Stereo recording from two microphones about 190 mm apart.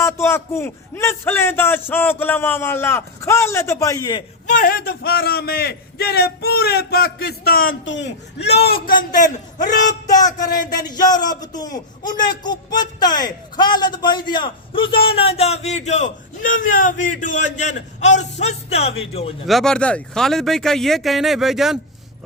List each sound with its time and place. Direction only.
0.0 s a man's voice: 15° left (ahead or behind)
4.4 s a man's voice: 45° left (ahead or behind)
7.9 s a man's voice: 70° left (ahead or behind)
9.0 s a man's voice: 45° left (ahead or behind)
10.8 s a man's voice: 20° left (ahead or behind)
19.5 s speech: centre (ahead or behind)